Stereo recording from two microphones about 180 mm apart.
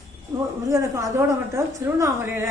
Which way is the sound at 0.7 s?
15° right (ahead or behind).